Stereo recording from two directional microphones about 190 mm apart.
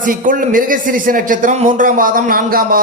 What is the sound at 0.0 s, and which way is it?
Speech, 45° right (ahead or behind).